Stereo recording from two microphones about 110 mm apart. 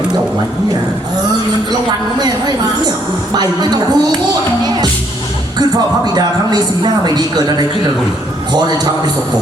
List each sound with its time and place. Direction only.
3.3 s speech: 40° right (ahead or behind)
4.6 s music: 40° right (ahead or behind)
5.5 s speech: 40° right (ahead or behind)